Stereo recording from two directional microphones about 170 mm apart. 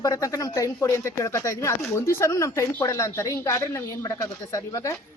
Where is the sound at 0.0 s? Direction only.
20° left (ahead or behind).